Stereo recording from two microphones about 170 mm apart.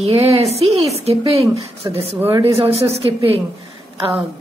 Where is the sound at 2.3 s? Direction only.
35° right (ahead or behind).